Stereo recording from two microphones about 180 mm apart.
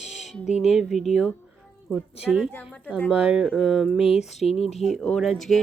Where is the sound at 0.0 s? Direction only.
Centre (ahead or behind).